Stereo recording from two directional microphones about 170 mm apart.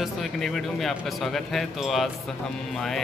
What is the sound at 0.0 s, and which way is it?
Speech, centre (ahead or behind).